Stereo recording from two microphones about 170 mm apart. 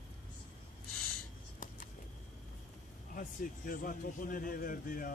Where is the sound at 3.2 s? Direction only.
55° left (ahead or behind).